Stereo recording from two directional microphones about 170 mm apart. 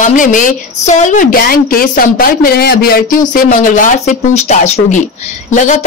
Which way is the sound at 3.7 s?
50° left (ahead or behind).